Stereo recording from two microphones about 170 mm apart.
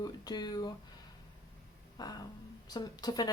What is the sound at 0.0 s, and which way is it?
Speech, 25° left (ahead or behind).